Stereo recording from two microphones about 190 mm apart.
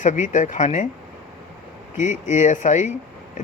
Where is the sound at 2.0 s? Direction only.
40° left (ahead or behind).